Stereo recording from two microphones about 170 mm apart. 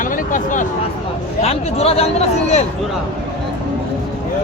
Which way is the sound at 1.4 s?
40° left (ahead or behind).